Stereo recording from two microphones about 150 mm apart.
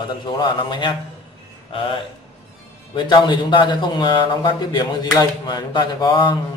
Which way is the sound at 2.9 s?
30° left (ahead or behind).